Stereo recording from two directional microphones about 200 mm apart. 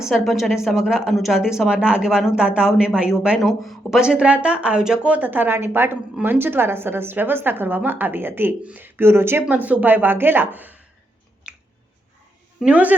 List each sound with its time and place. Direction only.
0.0 s a woman's voice: centre (ahead or behind)
12.5 s a woman's voice: 5° right (ahead or behind)